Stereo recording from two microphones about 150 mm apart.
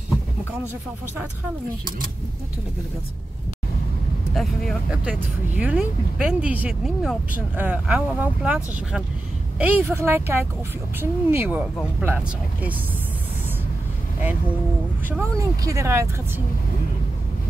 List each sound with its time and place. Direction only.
4.3 s speech: centre (ahead or behind)
5.6 s speech: 10° right (ahead or behind)
15.0 s speech: 15° right (ahead or behind)